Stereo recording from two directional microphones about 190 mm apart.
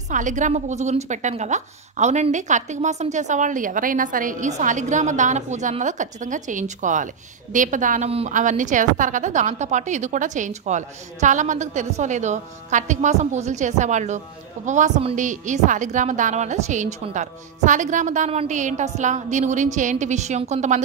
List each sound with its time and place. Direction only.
0.1 s a woman's voice: 40° right (ahead or behind)